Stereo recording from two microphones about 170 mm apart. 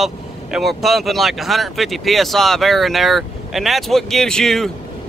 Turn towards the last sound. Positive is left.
turn(degrees=0)  # may be behind; listen again after turning